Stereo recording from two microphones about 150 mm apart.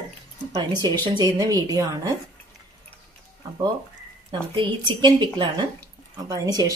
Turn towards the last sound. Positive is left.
turn(degrees=-25)  # may be behind; listen again after turning